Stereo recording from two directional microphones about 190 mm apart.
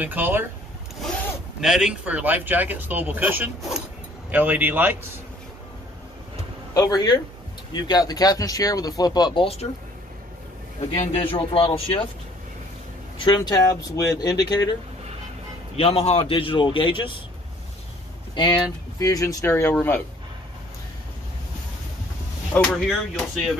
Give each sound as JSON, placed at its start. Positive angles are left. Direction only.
{"t": 0.0, "sound": "speech", "side_deg": -10}
{"t": 1.6, "sound": "speech", "side_deg": -5}
{"t": 6.7, "sound": "speech", "side_deg": 20}
{"t": 11.1, "sound": "speech", "side_deg": 30}
{"t": 13.2, "sound": "speech", "side_deg": 20}
{"t": 15.7, "sound": "speech", "side_deg": 30}
{"t": 18.3, "sound": "speech", "side_deg": 25}
{"t": 22.8, "sound": "speech", "side_deg": 0}